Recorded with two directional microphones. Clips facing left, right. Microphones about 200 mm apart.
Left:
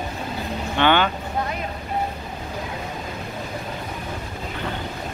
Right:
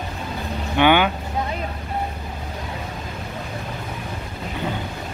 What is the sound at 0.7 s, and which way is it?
Vehicle, 10° right (ahead or behind).